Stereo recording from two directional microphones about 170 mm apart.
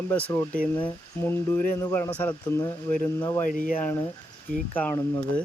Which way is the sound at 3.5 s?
55° left (ahead or behind).